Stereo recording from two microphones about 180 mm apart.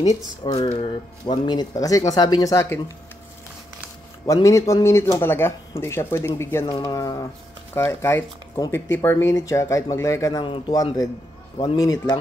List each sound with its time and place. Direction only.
0.4 s speech: 35° left (ahead or behind); by 2.8 s 15° left (ahead or behind)
4.3 s speech: 15° left (ahead or behind)